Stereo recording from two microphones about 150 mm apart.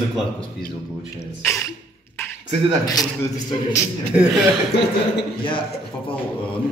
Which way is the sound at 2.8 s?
25° left (ahead or behind).